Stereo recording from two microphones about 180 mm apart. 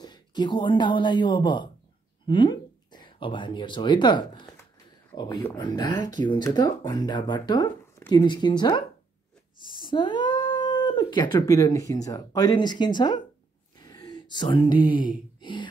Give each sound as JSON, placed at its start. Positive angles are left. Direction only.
{"t": 0.0, "sound": "speech", "side_deg": 25}
{"t": 5.6, "sound": "speech", "side_deg": 25}
{"t": 13.7, "sound": "a sound", "side_deg": 20}
{"t": 15.0, "sound": "speech", "side_deg": 25}